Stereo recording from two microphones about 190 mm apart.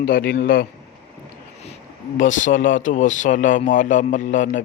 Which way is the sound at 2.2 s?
40° left (ahead or behind).